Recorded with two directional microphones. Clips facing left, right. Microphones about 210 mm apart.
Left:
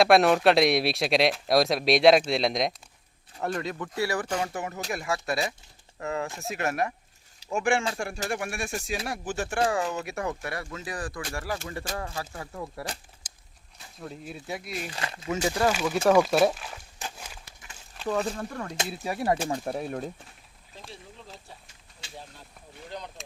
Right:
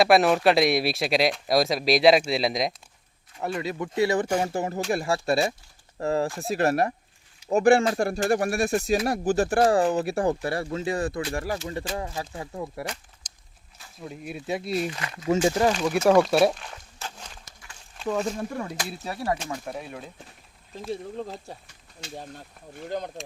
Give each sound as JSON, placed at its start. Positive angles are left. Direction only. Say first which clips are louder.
{"t": 0.0, "sound": "speech", "louder": "even", "side_deg": 0}
{"t": 3.9, "sound": "speech", "louder": "right 6 dB", "side_deg": -20}
{"t": 11.9, "sound": "speech", "louder": "right 3 dB", "side_deg": -15}
{"t": 13.2, "sound": "a sound", "louder": "even", "side_deg": 5}
{"t": 14.0, "sound": "speech", "louder": "right 3 dB", "side_deg": -15}
{"t": 14.9, "sound": "speech", "louder": "left 1 dB", "side_deg": 30}
{"t": 15.6, "sound": "speech", "louder": "left 2 dB", "side_deg": -15}
{"t": 16.1, "sound": "speech", "louder": "right 2 dB", "side_deg": 5}
{"t": 17.0, "sound": "dog", "louder": "even", "side_deg": 10}
{"t": 18.0, "sound": "speech", "louder": "right 1 dB", "side_deg": 0}
{"t": 18.9, "sound": "speech", "louder": "left 2 dB", "side_deg": 15}
{"t": 19.5, "sound": "speech", "louder": "left 4 dB", "side_deg": 40}
{"t": 21.2, "sound": "speech", "louder": "right 14 dB", "side_deg": -45}
{"t": 22.7, "sound": "speech", "louder": "right 8 dB", "side_deg": -50}